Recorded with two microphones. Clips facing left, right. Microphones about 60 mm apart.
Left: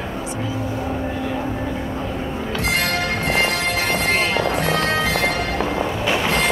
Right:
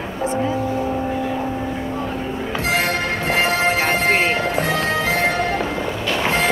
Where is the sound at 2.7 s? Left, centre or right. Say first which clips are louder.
Right 2 dB; left.